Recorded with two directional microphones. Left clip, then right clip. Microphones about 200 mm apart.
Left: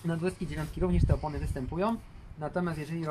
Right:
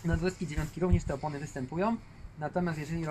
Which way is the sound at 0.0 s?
15° right (ahead or behind).